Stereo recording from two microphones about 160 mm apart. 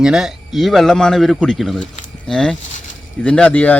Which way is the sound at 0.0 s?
5° right (ahead or behind).